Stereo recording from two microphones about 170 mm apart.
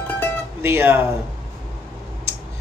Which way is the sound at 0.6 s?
15° right (ahead or behind).